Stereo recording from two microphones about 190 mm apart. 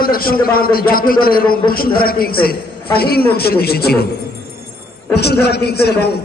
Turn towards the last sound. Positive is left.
turn(degrees=55)  # may be behind; listen again after turning